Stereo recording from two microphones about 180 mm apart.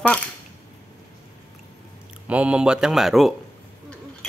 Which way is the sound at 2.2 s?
5° right (ahead or behind).